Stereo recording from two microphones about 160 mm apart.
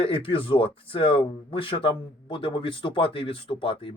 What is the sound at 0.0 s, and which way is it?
Speech, 35° left (ahead or behind).